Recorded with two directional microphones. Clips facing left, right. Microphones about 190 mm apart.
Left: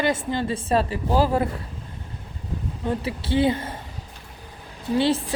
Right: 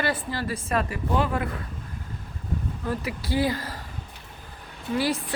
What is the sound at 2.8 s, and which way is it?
A woman's voice, 25° left (ahead or behind).